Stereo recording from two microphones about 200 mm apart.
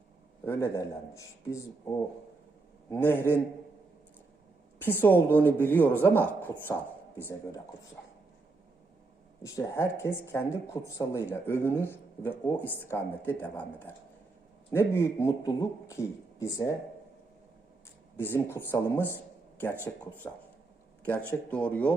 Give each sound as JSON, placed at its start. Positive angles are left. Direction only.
{"t": 0.4, "sound": "speech", "side_deg": 15}
{"t": 2.9, "sound": "speech", "side_deg": 10}
{"t": 4.8, "sound": "speech", "side_deg": 10}
{"t": 9.4, "sound": "speech", "side_deg": 15}
{"t": 18.2, "sound": "a man's voice", "side_deg": 10}